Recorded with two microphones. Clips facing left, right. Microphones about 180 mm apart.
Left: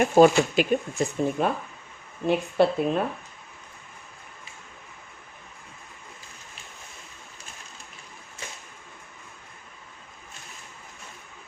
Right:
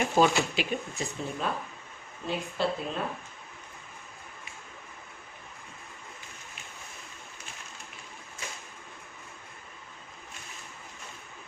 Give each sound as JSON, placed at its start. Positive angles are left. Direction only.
{"t": 0.0, "sound": "speech", "side_deg": 50}